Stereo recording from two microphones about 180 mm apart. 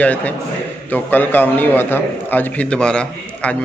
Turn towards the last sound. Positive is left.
turn(degrees=5)  # may be behind; listen again after turning